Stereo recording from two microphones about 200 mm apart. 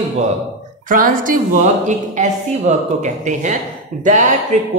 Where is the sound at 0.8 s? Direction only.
45° right (ahead or behind).